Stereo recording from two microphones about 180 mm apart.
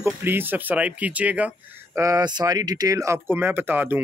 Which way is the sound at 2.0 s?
20° right (ahead or behind).